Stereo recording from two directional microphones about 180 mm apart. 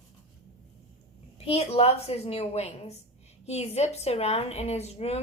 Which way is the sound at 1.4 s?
35° left (ahead or behind).